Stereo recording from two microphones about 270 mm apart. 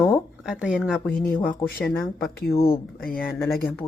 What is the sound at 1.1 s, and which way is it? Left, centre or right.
Speech, left.